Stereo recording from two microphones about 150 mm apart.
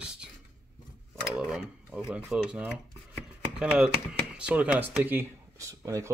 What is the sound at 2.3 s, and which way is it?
Speech, 5° right (ahead or behind).